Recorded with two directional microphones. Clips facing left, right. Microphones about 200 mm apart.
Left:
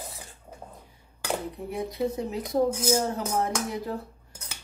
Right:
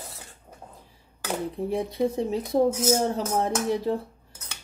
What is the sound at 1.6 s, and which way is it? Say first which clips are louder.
Speech: right 3 dB; 30° right (ahead or behind).